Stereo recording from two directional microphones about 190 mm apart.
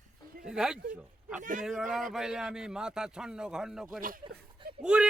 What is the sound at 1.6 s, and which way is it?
A man's voice, centre (ahead or behind).